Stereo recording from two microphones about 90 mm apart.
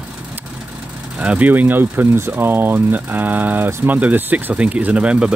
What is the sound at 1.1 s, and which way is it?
Speech, 15° right (ahead or behind).